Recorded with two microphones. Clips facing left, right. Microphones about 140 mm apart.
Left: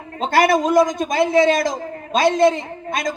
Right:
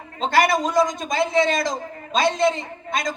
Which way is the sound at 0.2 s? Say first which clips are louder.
Left 3 dB; 50° left (ahead or behind).